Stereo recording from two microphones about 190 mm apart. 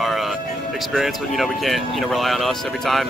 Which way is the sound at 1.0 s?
Centre (ahead or behind).